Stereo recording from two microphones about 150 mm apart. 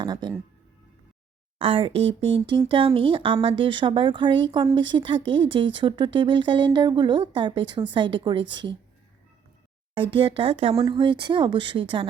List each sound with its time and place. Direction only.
0.0 s speech: 30° right (ahead or behind)
1.5 s speech: 35° right (ahead or behind)
9.9 s speech: 35° right (ahead or behind)